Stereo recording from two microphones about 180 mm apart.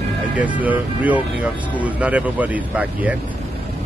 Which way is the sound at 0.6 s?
10° right (ahead or behind).